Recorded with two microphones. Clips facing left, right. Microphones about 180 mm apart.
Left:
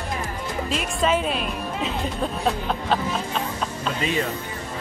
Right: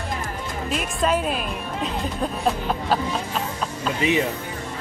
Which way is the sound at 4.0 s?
15° right (ahead or behind).